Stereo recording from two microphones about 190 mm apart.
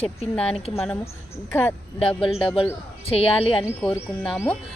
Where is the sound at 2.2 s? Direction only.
30° left (ahead or behind).